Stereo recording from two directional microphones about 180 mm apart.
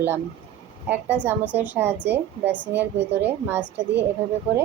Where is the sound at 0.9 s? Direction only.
10° right (ahead or behind).